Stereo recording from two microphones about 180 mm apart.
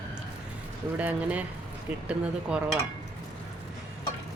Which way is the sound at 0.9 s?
10° right (ahead or behind).